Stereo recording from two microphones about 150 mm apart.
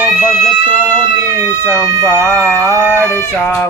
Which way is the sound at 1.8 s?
20° left (ahead or behind).